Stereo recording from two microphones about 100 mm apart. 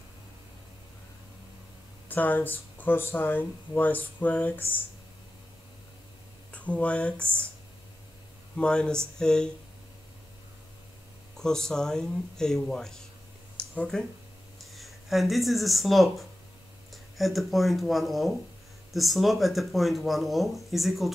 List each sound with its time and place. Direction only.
2.0 s speech: 20° left (ahead or behind)
6.5 s speech: 15° left (ahead or behind)
8.5 s speech: 10° left (ahead or behind)
11.3 s speech: 5° left (ahead or behind)
13.6 s a sound: 10° left (ahead or behind)
14.6 s speech: centre (ahead or behind)